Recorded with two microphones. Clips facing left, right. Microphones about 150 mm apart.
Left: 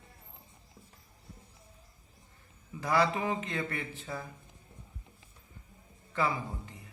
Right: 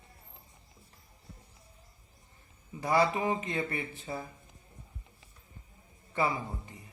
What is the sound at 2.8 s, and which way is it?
Speech, 20° right (ahead or behind).